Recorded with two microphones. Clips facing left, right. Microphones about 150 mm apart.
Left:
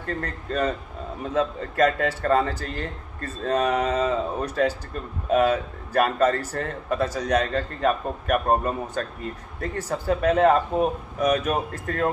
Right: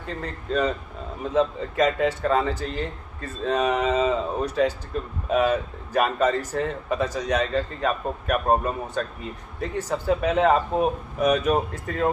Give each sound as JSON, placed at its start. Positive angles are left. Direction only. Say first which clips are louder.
{"t": 0.0, "sound": "a man's voice", "louder": "left 2 dB", "side_deg": 0}